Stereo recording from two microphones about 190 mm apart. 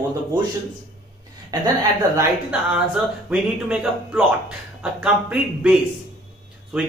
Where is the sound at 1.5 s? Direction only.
20° right (ahead or behind).